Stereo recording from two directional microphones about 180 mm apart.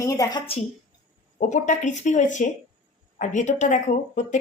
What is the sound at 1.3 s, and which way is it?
A woman's voice, 45° left (ahead or behind).